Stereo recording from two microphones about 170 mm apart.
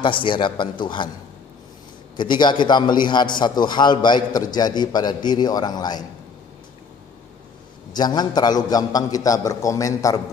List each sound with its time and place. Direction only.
0.0 s a man's voice: 30° left (ahead or behind)
2.1 s a man's voice: 25° left (ahead or behind)
7.9 s a man's voice: 25° left (ahead or behind)